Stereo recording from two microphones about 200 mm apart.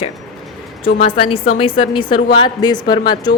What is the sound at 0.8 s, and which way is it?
A woman's voice, 25° left (ahead or behind).